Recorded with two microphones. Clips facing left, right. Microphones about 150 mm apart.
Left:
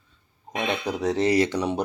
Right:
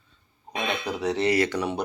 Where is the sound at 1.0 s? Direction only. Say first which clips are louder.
Left 2 dB; 40° left (ahead or behind).